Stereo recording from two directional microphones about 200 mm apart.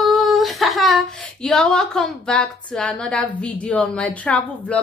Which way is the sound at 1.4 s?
5° left (ahead or behind).